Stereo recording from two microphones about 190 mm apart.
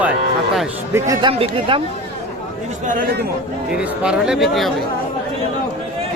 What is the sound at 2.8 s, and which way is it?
Speech, 45° right (ahead or behind).